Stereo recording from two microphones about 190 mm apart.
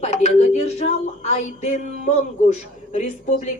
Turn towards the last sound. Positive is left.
turn(degrees=40)  # may be behind; listen again after turning